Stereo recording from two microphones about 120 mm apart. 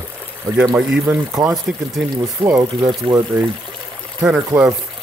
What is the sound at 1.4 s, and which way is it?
Speech, 35° right (ahead or behind).